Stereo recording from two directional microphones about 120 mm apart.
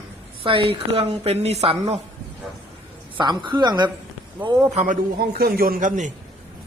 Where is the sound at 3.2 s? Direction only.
40° right (ahead or behind).